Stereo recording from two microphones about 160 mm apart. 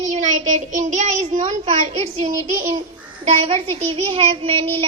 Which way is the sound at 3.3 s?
45° right (ahead or behind).